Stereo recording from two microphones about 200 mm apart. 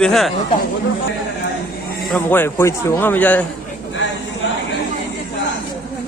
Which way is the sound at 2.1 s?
10° left (ahead or behind).